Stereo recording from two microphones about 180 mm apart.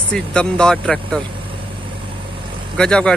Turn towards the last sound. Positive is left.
turn(degrees=5)  # may be behind; listen again after turning